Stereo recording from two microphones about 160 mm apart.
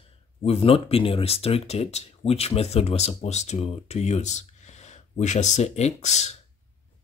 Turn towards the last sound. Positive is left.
turn(degrees=45)  # may be behind; listen again after turning